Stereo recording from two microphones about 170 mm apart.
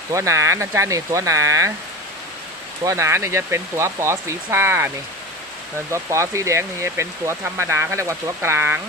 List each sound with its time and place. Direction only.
0.1 s speech: 15° right (ahead or behind)
2.8 s speech: 15° right (ahead or behind)
5.9 s speech: 15° right (ahead or behind)